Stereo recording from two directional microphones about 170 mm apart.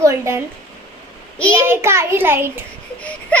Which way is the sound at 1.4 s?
5° left (ahead or behind).